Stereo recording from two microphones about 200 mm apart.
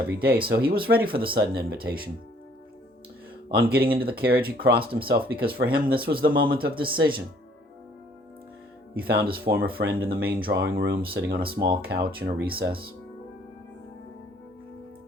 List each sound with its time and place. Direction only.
0.2 s speech: 50° right (ahead or behind)
3.5 s speech: 50° right (ahead or behind)
9.0 s speech: 50° right (ahead or behind)